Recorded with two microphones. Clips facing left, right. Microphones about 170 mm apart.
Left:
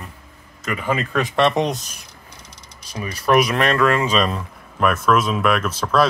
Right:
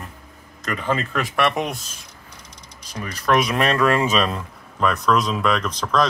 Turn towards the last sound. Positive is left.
turn(degrees=5)  # may be behind; listen again after turning